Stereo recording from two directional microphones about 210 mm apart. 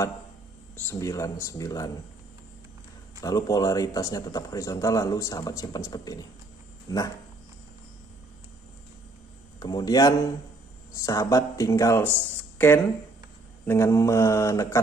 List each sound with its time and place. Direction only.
0.7 s speech: 15° left (ahead or behind)
3.2 s speech: 15° left (ahead or behind)
9.6 s speech: 20° left (ahead or behind)